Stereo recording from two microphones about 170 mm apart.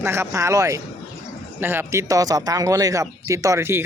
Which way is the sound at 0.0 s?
15° right (ahead or behind).